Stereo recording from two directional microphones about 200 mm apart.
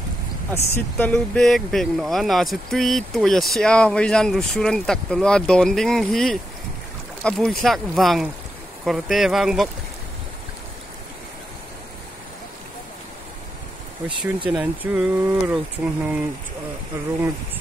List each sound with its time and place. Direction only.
0.7 s speech: 10° left (ahead or behind)
14.2 s speech: 5° right (ahead or behind)